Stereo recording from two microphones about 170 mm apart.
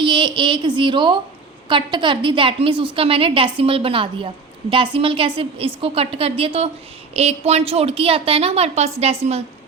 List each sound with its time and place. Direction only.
0.0 s a woman's voice: 30° right (ahead or behind)